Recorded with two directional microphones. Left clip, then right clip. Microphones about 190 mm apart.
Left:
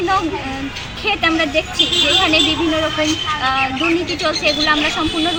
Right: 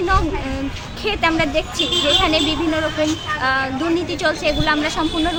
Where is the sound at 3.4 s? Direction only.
30° right (ahead or behind).